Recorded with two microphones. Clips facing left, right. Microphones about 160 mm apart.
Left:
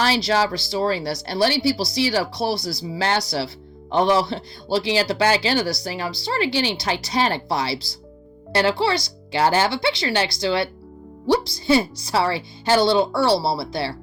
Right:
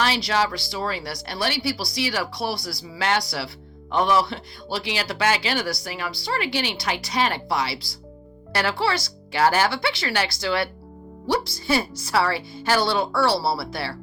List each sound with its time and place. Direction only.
0.0 s speech: 35° left (ahead or behind)
8.8 s a woman's voice: 20° left (ahead or behind)